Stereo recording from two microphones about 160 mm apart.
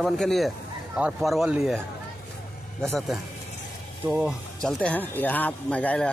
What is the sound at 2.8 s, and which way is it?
Speech, centre (ahead or behind).